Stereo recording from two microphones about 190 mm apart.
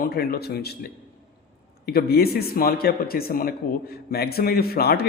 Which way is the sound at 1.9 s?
55° left (ahead or behind).